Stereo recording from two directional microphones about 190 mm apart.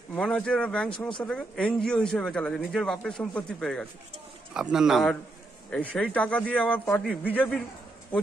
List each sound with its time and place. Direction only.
0.1 s speech: 5° left (ahead or behind)